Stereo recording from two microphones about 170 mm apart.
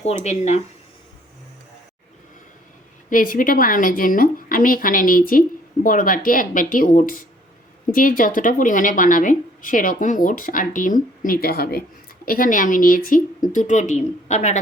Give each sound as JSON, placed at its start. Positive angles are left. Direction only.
{"t": 0.0, "sound": "speech", "side_deg": 40}
{"t": 3.1, "sound": "a woman's voice", "side_deg": 50}